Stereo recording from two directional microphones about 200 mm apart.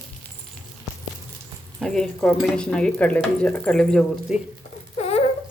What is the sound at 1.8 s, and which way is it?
Speech, centre (ahead or behind).